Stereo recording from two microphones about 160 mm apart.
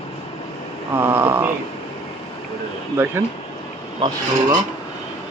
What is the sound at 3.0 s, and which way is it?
Speech, 10° right (ahead or behind).